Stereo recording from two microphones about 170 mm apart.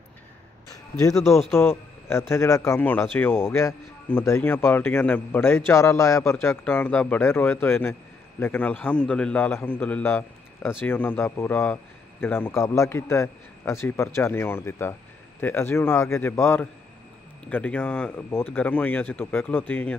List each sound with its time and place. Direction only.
0.9 s a man's voice: 20° left (ahead or behind)